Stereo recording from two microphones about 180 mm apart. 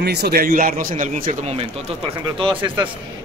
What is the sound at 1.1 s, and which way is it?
Speech, 35° right (ahead or behind).